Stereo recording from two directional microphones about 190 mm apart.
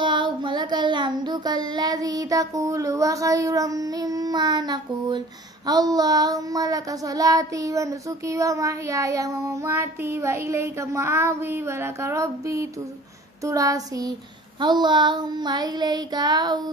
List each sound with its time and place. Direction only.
0.0 s child singing: 25° right (ahead or behind)